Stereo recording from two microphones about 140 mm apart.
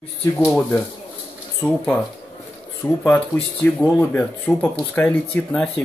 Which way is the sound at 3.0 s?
10° left (ahead or behind).